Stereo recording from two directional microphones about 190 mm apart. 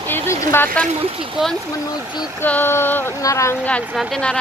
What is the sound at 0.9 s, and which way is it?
Speech, 30° right (ahead or behind).